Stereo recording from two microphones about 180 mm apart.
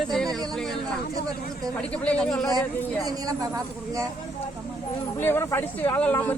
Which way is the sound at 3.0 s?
20° right (ahead or behind).